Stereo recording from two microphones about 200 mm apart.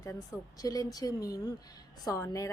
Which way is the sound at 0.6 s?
20° left (ahead or behind).